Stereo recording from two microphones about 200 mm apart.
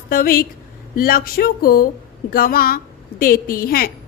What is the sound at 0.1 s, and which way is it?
A woman's voice, 45° left (ahead or behind).